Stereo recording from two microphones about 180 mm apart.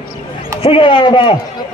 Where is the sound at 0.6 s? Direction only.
30° left (ahead or behind).